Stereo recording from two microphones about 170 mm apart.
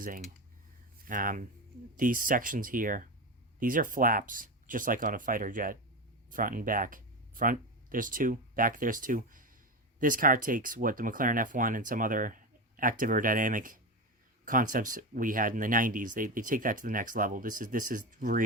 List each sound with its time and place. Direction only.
0.0 s speech: 50° right (ahead or behind)